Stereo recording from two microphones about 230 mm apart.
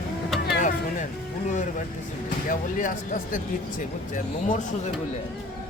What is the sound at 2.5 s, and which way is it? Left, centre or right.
Speech, left.